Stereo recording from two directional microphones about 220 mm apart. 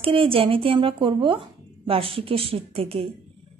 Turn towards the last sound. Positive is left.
turn(degrees=-25)  # may be behind; listen again after turning